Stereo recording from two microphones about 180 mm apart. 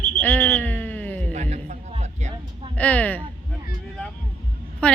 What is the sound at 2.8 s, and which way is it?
Speech, 10° left (ahead or behind).